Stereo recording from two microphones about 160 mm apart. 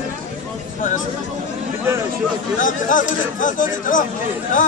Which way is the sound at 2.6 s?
55° left (ahead or behind).